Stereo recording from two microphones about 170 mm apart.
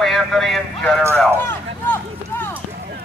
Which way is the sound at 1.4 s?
10° left (ahead or behind).